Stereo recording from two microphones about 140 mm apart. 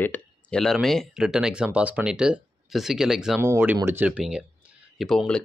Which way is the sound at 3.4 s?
15° right (ahead or behind).